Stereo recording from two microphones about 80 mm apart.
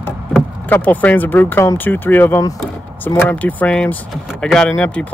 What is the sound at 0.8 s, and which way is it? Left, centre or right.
Speech, left.